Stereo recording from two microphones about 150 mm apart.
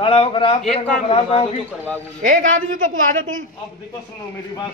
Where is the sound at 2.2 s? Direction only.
60° right (ahead or behind).